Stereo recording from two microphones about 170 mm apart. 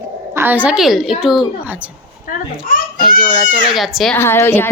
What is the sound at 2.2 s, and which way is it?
Children playing, 55° left (ahead or behind).